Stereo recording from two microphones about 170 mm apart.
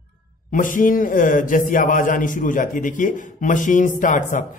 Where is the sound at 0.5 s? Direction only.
50° left (ahead or behind).